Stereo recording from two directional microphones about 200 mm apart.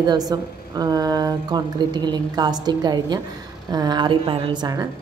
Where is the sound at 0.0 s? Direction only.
20° right (ahead or behind).